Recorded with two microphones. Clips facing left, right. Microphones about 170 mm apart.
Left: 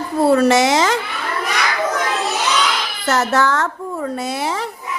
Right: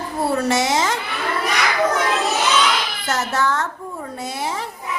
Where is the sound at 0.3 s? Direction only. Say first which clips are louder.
Left 3 dB; 90° left.